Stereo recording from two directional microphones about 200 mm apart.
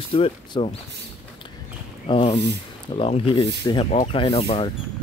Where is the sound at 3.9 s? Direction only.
35° left (ahead or behind).